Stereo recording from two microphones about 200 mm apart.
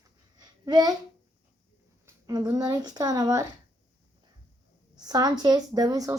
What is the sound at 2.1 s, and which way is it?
Speech, 20° right (ahead or behind).